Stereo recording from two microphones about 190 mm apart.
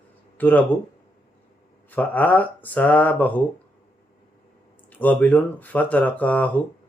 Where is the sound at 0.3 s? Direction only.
10° left (ahead or behind).